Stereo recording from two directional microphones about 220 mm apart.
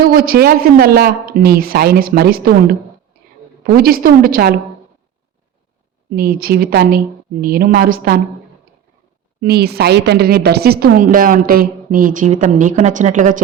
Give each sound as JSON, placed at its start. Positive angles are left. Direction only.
{"t": 0.0, "sound": "a woman's voice", "side_deg": -40}
{"t": 6.1, "sound": "a woman's voice", "side_deg": -40}
{"t": 9.4, "sound": "a woman's voice", "side_deg": -45}